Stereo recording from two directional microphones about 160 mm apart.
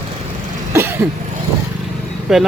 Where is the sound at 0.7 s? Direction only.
15° right (ahead or behind).